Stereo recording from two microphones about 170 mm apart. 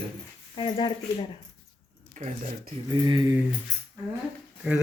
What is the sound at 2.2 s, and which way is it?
Speech, 45° right (ahead or behind).